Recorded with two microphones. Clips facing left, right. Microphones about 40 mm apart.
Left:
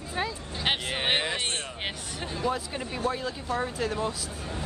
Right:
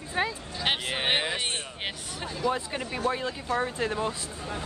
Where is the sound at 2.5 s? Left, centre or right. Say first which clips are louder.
Right 1 dB; centre.